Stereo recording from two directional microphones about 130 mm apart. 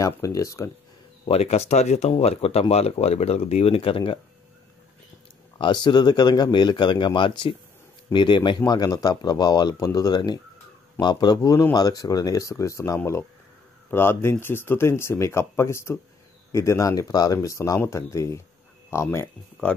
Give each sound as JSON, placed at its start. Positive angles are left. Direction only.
{"t": 0.0, "sound": "speech", "side_deg": 25}
{"t": 1.2, "sound": "speech", "side_deg": 50}
{"t": 5.9, "sound": "speech", "side_deg": 35}